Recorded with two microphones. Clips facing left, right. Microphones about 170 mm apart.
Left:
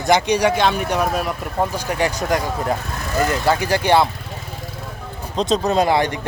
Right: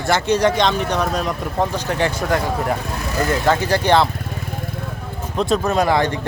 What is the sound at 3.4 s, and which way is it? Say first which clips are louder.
Speech: right 1 dB; 10° left (ahead or behind).